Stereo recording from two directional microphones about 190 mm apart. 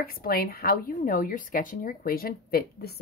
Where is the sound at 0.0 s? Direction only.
50° left (ahead or behind).